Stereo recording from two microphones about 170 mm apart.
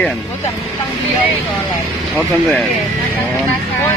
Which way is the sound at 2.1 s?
10° left (ahead or behind).